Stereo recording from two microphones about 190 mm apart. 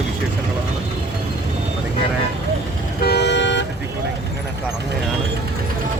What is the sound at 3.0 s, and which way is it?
Vehicle, 60° left (ahead or behind).